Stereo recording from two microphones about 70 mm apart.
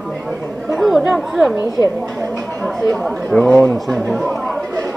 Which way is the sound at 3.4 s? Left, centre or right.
Centre.